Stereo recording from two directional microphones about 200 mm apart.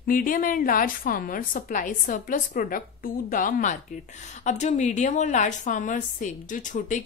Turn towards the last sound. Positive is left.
turn(degrees=40)  # may be behind; listen again after turning